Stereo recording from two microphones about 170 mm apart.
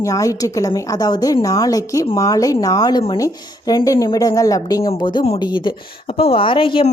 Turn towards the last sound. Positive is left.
turn(degrees=30)  # may be behind; listen again after turning